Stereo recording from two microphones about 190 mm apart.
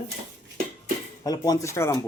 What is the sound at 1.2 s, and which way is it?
Speech, 20° left (ahead or behind).